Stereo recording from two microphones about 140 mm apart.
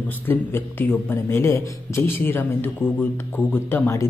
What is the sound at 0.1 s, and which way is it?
Speech, 15° left (ahead or behind).